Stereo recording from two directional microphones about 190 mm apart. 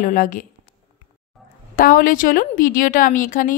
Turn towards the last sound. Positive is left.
turn(degrees=45)  # may be behind; listen again after turning